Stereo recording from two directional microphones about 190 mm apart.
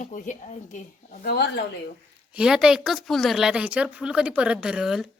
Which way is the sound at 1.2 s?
55° left (ahead or behind).